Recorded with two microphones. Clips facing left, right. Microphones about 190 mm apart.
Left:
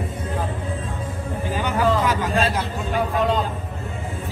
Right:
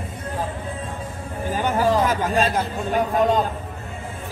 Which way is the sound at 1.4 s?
50° right (ahead or behind).